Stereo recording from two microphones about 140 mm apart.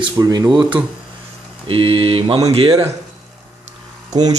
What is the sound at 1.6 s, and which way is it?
Speech, 40° right (ahead or behind).